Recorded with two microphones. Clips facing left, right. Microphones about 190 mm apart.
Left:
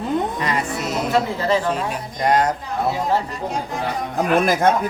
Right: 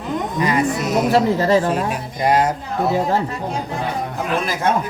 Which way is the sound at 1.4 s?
40° right (ahead or behind).